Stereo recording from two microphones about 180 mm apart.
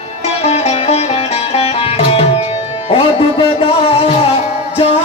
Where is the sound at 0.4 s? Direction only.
35° left (ahead or behind).